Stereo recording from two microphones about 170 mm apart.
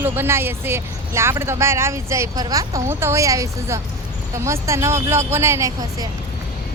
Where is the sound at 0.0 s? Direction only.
15° right (ahead or behind).